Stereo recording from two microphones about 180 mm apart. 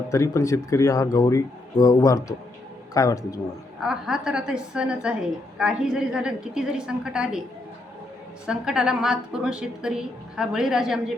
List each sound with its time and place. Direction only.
0.1 s speech: 15° left (ahead or behind)
3.8 s a woman's voice: 5° right (ahead or behind)
8.4 s a woman's voice: 5° right (ahead or behind)